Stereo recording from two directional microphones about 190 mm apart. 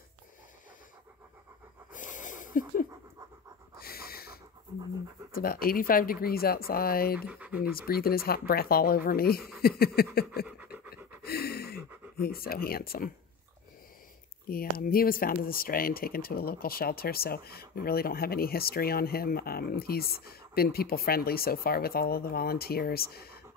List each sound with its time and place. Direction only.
1.9 s breathing: 45° left (ahead or behind)
3.8 s pant: 55° left (ahead or behind)
5.3 s speech: 50° left (ahead or behind)
7.2 s speech: 5° right (ahead or behind)
7.7 s speech: 50° left (ahead or behind)
10.4 s pant: 5° right (ahead or behind)
11.2 s a sound: 55° left (ahead or behind)
12.2 s speech: 50° left (ahead or behind)
14.5 s speech: 50° left (ahead or behind)